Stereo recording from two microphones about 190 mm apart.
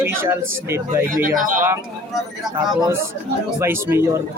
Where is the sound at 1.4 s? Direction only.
45° right (ahead or behind).